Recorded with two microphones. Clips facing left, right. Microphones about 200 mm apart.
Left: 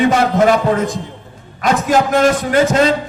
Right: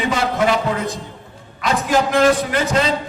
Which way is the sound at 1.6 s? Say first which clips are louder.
Left 4 dB; 45° left (ahead or behind).